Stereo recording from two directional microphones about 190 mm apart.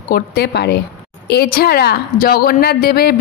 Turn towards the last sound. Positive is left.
turn(degrees=55)  # may be behind; listen again after turning